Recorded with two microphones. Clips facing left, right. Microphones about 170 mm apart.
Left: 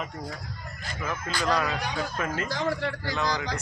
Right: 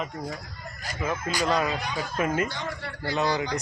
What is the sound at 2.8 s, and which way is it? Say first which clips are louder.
Speech: left 3 dB; 90° left.